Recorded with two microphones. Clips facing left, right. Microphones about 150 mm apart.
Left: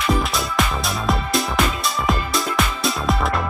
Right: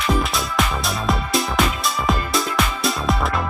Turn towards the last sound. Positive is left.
turn(degrees=0)  # may be behind; listen again after turning